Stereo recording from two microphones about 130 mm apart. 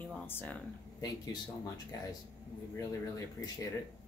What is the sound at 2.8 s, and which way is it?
Speech, 25° left (ahead or behind).